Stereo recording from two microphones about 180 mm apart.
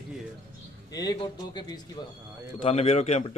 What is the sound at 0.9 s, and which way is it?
A man's voice, 25° left (ahead or behind).